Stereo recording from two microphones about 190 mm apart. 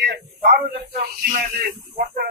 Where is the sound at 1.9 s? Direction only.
45° right (ahead or behind).